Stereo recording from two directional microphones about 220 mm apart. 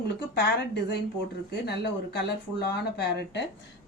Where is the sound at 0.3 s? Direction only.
50° left (ahead or behind).